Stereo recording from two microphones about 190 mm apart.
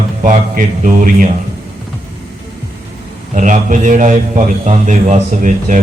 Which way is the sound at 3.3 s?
40° right (ahead or behind).